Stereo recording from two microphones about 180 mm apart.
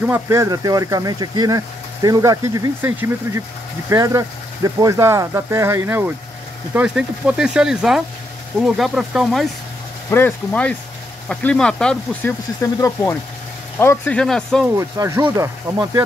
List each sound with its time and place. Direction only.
0.0 s speech: 15° right (ahead or behind)
10.0 s speech: 10° left (ahead or behind)
14.8 s speech: 15° right (ahead or behind)